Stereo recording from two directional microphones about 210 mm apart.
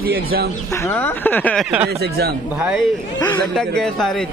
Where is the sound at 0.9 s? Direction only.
10° left (ahead or behind).